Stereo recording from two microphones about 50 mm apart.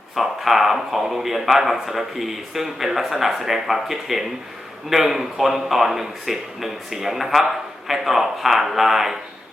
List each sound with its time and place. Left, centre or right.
0.2 s a man's voice: centre